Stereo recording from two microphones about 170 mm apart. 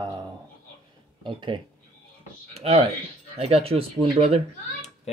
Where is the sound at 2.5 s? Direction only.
35° right (ahead or behind).